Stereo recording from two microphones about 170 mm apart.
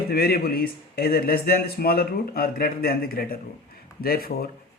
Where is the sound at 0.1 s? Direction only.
65° left (ahead or behind).